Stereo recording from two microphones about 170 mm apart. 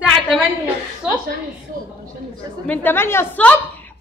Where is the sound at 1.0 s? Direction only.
5° right (ahead or behind).